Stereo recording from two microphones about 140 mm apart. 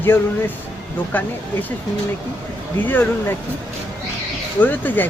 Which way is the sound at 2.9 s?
15° left (ahead or behind).